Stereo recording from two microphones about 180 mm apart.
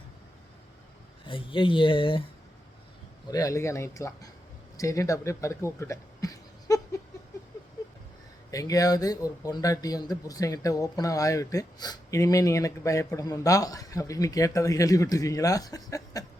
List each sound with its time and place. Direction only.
1.2 s speech: 30° left (ahead or behind)
3.2 s speech: 20° left (ahead or behind)
8.4 s speech: 20° left (ahead or behind)